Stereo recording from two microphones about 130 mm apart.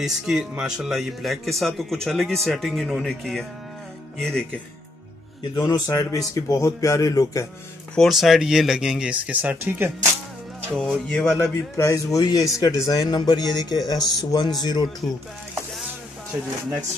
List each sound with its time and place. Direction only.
0.0 s speech: 5° right (ahead or behind)
5.6 s speech: 30° left (ahead or behind)
7.9 s speech: centre (ahead or behind); by 9.9 s 15° right (ahead or behind)
10.8 s speech: 5° left (ahead or behind)
11.4 s speech: 25° left (ahead or behind)